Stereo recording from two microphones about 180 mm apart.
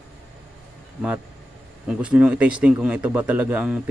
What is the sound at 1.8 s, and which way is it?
A man's voice, 5° right (ahead or behind).